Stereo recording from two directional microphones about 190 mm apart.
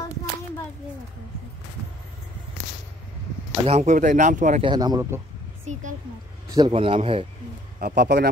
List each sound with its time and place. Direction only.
3.6 s speech: 35° right (ahead or behind)
4.6 s a man's voice: 20° right (ahead or behind)
5.7 s speech: 40° right (ahead or behind)
6.5 s a man's voice: 25° right (ahead or behind)
7.8 s speech: 55° right (ahead or behind)